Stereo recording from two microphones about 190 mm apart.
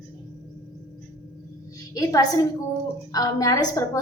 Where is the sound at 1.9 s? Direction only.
20° left (ahead or behind).